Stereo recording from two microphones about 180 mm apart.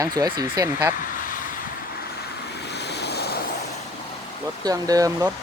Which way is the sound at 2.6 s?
70° left (ahead or behind).